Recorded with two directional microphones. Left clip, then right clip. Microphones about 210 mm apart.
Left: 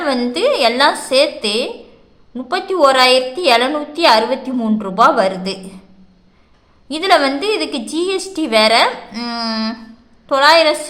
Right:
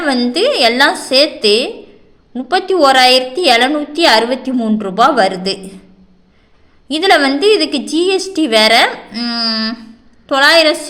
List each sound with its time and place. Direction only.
0.0 s a woman's voice: 10° right (ahead or behind)
6.8 s a woman's voice: 10° right (ahead or behind)